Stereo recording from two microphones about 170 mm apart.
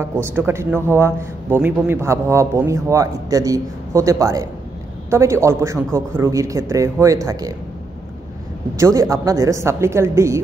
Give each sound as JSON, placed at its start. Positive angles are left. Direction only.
{"t": 0.0, "sound": "a man's voice", "side_deg": -15}
{"t": 8.7, "sound": "a man's voice", "side_deg": -15}